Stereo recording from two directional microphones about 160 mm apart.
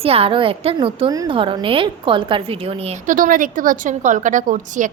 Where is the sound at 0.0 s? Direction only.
35° right (ahead or behind).